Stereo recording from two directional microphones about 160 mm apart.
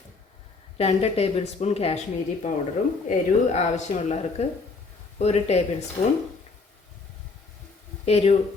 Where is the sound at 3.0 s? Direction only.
45° left (ahead or behind).